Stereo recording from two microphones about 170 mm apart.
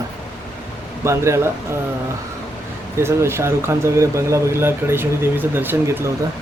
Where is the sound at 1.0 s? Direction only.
15° right (ahead or behind).